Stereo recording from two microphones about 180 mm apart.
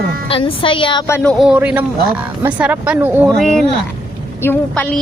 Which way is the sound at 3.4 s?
5° left (ahead or behind).